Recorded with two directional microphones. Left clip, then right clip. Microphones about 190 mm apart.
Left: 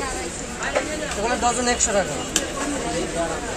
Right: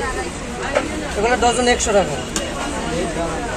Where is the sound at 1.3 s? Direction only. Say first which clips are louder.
Right 6 dB; 45° right (ahead or behind).